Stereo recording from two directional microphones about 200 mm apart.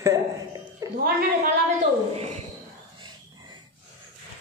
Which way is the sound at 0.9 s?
50° right (ahead or behind).